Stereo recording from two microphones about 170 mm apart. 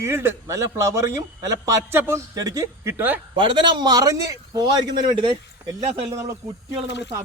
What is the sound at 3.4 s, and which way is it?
Speech, 30° right (ahead or behind).